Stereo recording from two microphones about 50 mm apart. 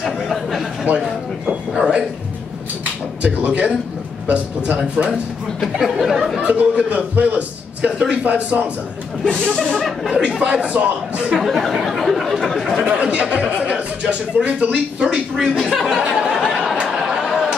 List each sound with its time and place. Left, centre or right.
0.0 s chatter: centre
0.9 s speech: centre
1.8 s music: right
3.2 s speech: right
5.6 s speech: centre
6.4 s speech: right
9.2 s speech: centre
9.8 s speech: centre
10.4 s speech: centre
11.3 s speech: centre
12.8 s speech: right
16.3 s a sound: centre
16.8 s chatter: centre